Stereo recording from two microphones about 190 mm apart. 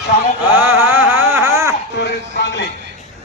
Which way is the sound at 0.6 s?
10° right (ahead or behind).